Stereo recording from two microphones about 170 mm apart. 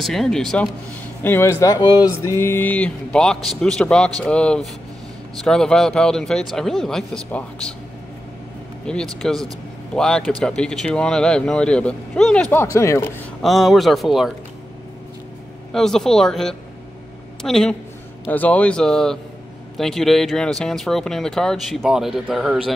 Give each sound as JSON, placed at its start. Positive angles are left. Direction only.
{"t": 0.0, "sound": "speech", "side_deg": 0}
{"t": 1.2, "sound": "speech", "side_deg": 15}
{"t": 8.8, "sound": "speech", "side_deg": 5}
{"t": 13.4, "sound": "speech", "side_deg": 0}
{"t": 15.7, "sound": "speech", "side_deg": 0}